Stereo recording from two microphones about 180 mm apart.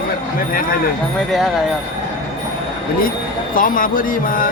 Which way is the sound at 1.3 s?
Centre (ahead or behind).